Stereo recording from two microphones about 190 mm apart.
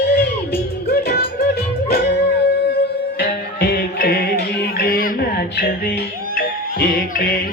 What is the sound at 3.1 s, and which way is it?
Music, 55° left (ahead or behind).